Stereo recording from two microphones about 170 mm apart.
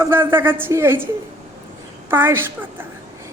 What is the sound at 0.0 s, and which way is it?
A woman's voice, 15° right (ahead or behind).